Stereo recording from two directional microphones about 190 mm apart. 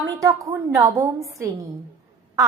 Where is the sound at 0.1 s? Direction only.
15° right (ahead or behind).